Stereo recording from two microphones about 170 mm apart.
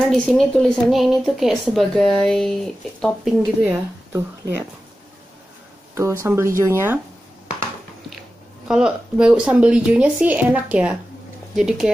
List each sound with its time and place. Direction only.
0.0 s a woman's voice: 5° left (ahead or behind)
3.6 s speech: 10° right (ahead or behind)
6.2 s speech: 15° right (ahead or behind)
8.6 s a woman's voice: 5° right (ahead or behind)